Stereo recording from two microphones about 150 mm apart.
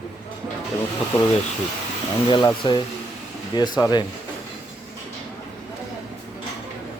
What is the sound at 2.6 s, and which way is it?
Speech, 35° left (ahead or behind).